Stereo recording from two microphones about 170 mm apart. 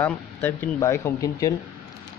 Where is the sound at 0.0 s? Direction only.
10° left (ahead or behind).